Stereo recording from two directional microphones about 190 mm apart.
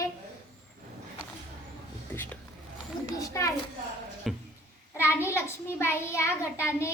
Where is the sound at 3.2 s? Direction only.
15° left (ahead or behind).